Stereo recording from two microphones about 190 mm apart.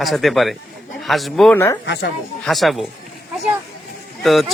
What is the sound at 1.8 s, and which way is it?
Speech, 65° left (ahead or behind).